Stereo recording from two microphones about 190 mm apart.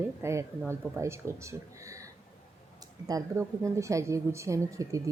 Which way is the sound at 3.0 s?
15° right (ahead or behind).